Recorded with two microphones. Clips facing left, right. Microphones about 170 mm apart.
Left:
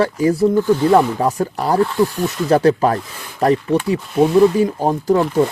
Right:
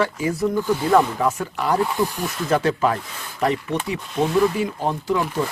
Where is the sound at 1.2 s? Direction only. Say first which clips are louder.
Left 4 dB; 35° left (ahead or behind).